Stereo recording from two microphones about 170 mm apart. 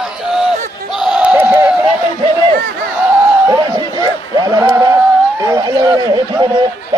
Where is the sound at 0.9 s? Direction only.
5° right (ahead or behind).